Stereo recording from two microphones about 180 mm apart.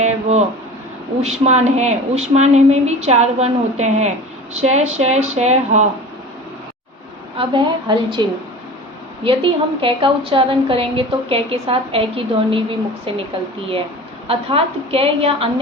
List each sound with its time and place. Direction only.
0.0 s a sound: 35° right (ahead or behind)
1.2 s a woman's voice: 35° right (ahead or behind)
7.3 s a woman's voice: 25° right (ahead or behind)
14.3 s a woman's voice: 30° right (ahead or behind)